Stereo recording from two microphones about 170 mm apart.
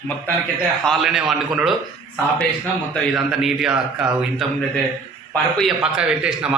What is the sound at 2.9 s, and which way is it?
A man's voice, centre (ahead or behind).